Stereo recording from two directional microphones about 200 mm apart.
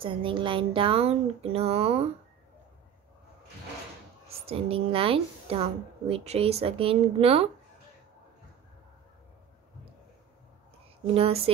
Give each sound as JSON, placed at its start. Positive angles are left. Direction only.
{"t": 0.0, "sound": "a woman's voice", "side_deg": -25}
{"t": 4.5, "sound": "a woman's voice", "side_deg": -30}
{"t": 11.1, "sound": "a woman's voice", "side_deg": -30}